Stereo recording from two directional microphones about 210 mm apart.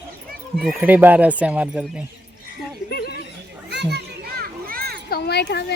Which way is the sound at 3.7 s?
55° right (ahead or behind).